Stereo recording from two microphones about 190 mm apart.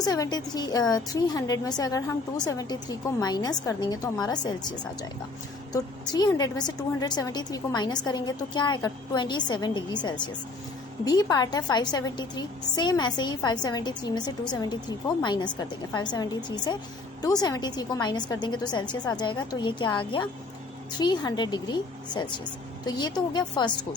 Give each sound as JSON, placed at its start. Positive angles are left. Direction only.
{"t": 0.0, "sound": "a woman's voice", "side_deg": 20}
{"t": 5.7, "sound": "a woman's voice", "side_deg": 20}